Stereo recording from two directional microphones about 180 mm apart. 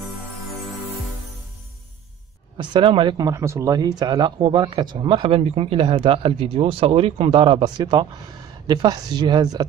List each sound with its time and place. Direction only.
2.5 s speech: 25° right (ahead or behind)